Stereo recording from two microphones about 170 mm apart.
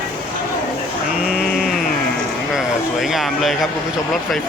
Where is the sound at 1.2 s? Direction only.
Centre (ahead or behind).